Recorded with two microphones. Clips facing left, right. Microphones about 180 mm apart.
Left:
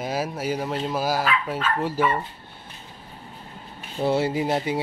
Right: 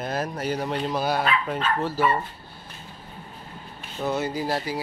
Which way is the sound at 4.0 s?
30° left (ahead or behind).